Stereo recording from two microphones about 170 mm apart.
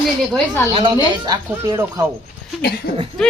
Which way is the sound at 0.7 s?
30° right (ahead or behind).